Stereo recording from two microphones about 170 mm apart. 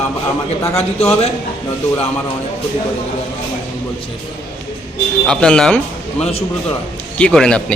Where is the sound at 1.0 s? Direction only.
35° left (ahead or behind).